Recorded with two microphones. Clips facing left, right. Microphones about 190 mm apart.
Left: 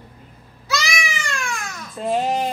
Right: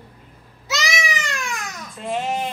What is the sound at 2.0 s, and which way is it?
Babbling, 40° left (ahead or behind).